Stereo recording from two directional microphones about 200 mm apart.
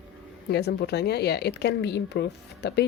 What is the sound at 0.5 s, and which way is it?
Speech, 55° left (ahead or behind).